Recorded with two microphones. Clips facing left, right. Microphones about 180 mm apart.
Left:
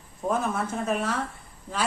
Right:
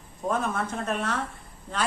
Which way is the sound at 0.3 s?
5° left (ahead or behind).